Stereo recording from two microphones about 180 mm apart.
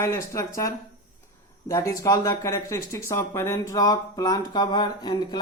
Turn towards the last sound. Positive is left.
turn(degrees=25)  # may be behind; listen again after turning